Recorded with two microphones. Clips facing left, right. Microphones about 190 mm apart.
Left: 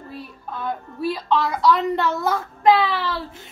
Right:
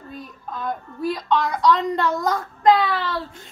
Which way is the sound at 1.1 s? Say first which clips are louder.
Even; 5° left (ahead or behind).